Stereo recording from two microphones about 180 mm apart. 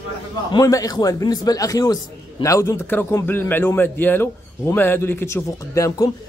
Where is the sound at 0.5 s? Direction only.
20° left (ahead or behind).